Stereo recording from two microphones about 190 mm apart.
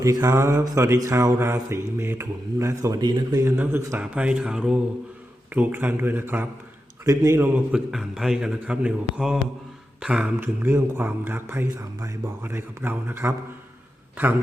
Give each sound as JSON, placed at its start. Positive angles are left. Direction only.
{"t": 0.0, "sound": "mantra", "side_deg": -15}
{"t": 7.0, "sound": "a man's voice", "side_deg": -15}
{"t": 10.0, "sound": "mantra", "side_deg": -5}